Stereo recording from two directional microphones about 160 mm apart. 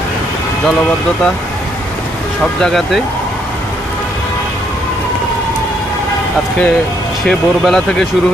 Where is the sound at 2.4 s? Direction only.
Centre (ahead or behind).